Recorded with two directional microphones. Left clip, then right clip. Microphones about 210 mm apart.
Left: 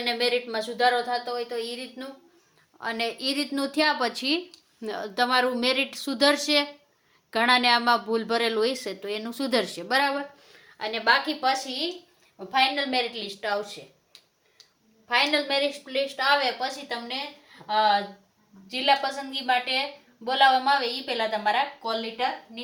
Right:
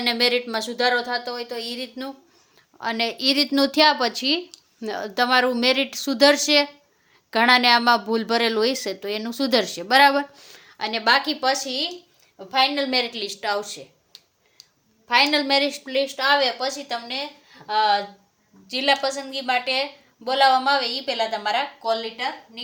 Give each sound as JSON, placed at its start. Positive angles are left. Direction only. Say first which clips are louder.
{"t": 0.0, "sound": "a woman's voice", "louder": "right 4 dB", "side_deg": -50}
{"t": 2.7, "sound": "a woman's voice", "louder": "right 4 dB", "side_deg": -35}
{"t": 15.0, "sound": "a woman's voice", "louder": "right 4 dB", "side_deg": -50}